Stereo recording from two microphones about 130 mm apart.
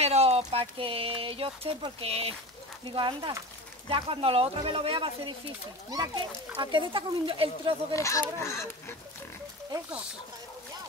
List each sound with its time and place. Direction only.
0.0 s a sound: 55° right (ahead or behind)
0.5 s speech: 45° right (ahead or behind)
5.9 s a child's voice: 30° right (ahead or behind)
7.9 s speech: 25° left (ahead or behind)